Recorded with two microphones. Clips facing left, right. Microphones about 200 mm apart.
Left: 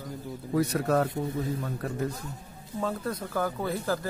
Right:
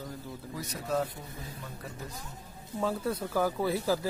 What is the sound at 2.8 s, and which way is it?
Speech, 5° right (ahead or behind).